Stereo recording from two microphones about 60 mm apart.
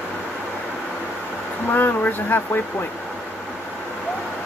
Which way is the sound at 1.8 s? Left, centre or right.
Left.